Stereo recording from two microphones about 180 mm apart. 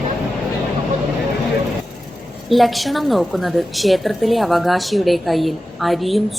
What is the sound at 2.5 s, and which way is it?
A woman's voice, centre (ahead or behind).